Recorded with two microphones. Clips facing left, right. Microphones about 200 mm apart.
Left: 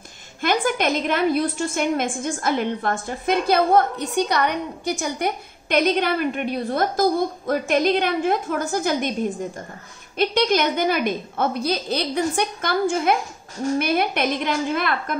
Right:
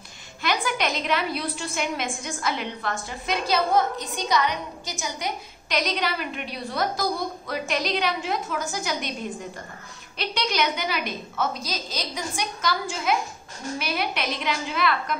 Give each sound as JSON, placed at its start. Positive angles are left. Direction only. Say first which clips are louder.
{"t": 0.4, "sound": "a woman's voice", "louder": "left 5 dB", "side_deg": 50}
{"t": 10.1, "sound": "a woman's voice", "louder": "left 8 dB", "side_deg": 50}